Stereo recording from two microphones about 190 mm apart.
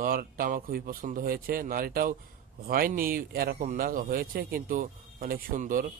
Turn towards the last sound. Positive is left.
turn(degrees=-45)  # may be behind; listen again after turning